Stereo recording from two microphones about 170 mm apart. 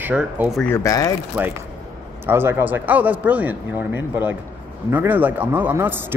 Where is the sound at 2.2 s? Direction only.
15° right (ahead or behind).